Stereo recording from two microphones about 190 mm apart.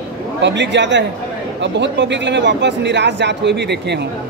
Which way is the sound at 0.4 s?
70° right (ahead or behind).